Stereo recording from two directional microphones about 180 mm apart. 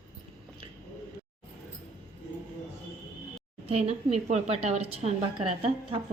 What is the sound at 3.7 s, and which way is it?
A woman's voice, 35° right (ahead or behind).